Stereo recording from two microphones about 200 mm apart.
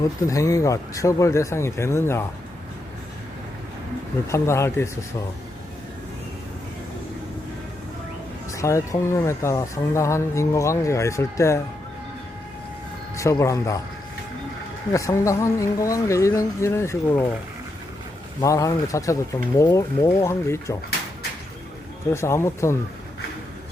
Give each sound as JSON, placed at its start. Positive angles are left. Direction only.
{"t": 0.3, "sound": "speech", "side_deg": 15}
{"t": 4.3, "sound": "speech", "side_deg": 15}
{"t": 8.5, "sound": "speech", "side_deg": 15}
{"t": 13.1, "sound": "speech", "side_deg": 15}
{"t": 14.9, "sound": "speech", "side_deg": 15}
{"t": 18.3, "sound": "speech", "side_deg": 15}
{"t": 22.1, "sound": "speech", "side_deg": 15}